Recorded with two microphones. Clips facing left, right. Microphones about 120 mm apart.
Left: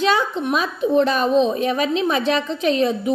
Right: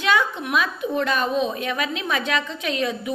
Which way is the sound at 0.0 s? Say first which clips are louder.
Left 3 dB; 30° left (ahead or behind).